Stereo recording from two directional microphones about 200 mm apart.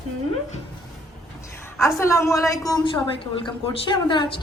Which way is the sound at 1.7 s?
15° left (ahead or behind).